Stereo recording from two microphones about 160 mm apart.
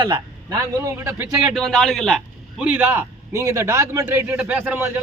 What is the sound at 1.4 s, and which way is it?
A man's voice, 5° left (ahead or behind).